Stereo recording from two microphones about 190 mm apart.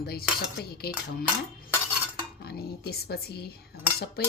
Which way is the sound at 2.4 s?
55° left (ahead or behind).